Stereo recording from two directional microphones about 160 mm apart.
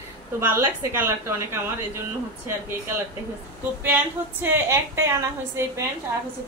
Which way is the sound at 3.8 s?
10° right (ahead or behind).